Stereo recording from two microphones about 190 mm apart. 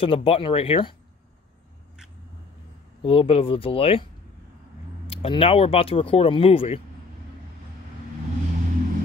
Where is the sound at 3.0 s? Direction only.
30° left (ahead or behind).